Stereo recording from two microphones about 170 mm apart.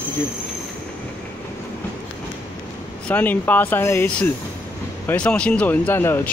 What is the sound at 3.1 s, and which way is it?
Speech, 10° left (ahead or behind).